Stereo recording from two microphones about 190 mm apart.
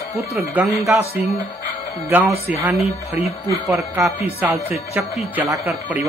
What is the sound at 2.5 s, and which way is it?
Speech, 5° right (ahead or behind).